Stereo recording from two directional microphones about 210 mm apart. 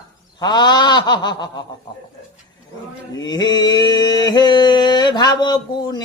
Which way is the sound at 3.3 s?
20° left (ahead or behind).